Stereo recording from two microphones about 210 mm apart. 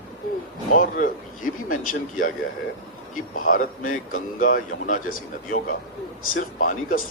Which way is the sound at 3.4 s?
40° left (ahead or behind).